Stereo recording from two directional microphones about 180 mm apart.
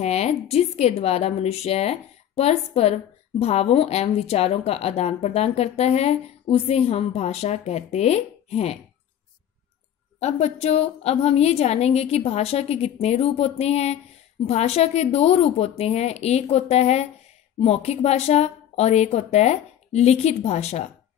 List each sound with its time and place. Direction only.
0.0 s speech: 35° left (ahead or behind)
10.1 s speech: 35° left (ahead or behind)